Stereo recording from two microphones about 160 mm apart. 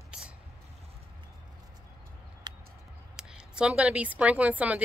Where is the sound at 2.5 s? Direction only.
25° right (ahead or behind).